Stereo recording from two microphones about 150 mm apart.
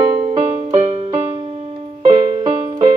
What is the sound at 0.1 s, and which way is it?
Music, 35° right (ahead or behind).